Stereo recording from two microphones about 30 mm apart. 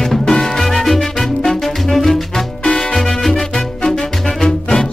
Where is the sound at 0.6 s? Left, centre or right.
Centre.